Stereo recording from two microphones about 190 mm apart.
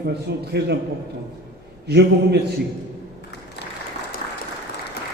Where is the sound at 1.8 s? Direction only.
60° right (ahead or behind).